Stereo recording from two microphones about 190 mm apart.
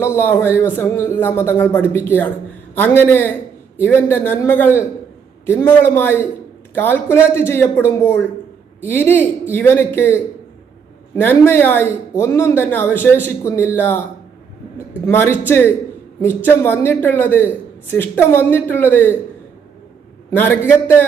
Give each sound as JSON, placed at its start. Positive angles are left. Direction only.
{"t": 0.0, "sound": "speech", "side_deg": 10}
{"t": 15.0, "sound": "speech", "side_deg": 10}
{"t": 20.3, "sound": "speech", "side_deg": 10}